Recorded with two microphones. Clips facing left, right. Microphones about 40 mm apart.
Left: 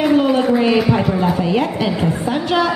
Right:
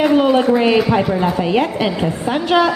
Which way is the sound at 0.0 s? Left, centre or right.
Centre.